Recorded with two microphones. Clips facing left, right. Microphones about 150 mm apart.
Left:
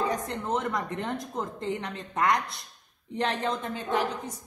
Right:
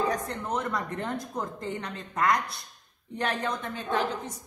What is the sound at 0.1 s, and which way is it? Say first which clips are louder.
A woman's voice: left 1 dB; 25° left (ahead or behind).